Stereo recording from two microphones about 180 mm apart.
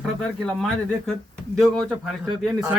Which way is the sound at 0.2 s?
Centre (ahead or behind).